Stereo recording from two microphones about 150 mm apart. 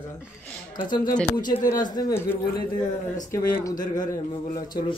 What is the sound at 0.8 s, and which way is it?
Speech, 30° left (ahead or behind).